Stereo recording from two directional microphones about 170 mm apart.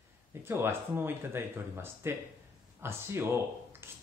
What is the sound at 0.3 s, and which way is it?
Speech, 15° right (ahead or behind).